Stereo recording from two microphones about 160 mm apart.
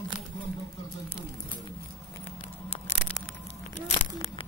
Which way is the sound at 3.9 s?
40° left (ahead or behind).